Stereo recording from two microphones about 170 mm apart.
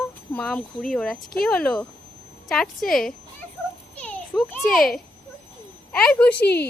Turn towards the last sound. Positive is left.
turn(degrees=80)